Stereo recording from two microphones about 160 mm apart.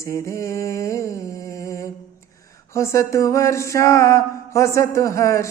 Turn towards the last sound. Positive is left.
turn(degrees=20)  # may be behind; listen again after turning